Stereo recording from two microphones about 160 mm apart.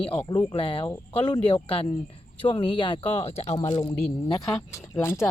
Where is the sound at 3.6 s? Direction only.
25° left (ahead or behind).